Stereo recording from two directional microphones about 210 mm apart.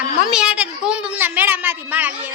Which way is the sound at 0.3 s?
5° right (ahead or behind).